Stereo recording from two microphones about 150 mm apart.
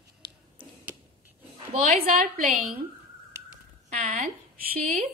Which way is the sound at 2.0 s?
70° right (ahead or behind).